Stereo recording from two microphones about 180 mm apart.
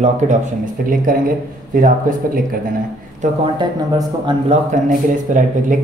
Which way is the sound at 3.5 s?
25° right (ahead or behind).